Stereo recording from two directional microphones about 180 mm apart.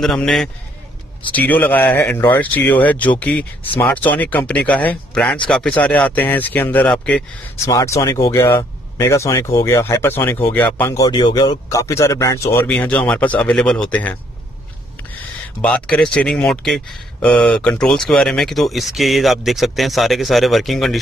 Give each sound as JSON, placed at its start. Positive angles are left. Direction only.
{"t": 0.0, "sound": "speech", "side_deg": 0}
{"t": 7.6, "sound": "speech", "side_deg": 15}
{"t": 15.6, "sound": "speech", "side_deg": 5}